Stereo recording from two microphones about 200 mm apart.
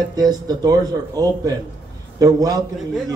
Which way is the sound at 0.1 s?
20° right (ahead or behind).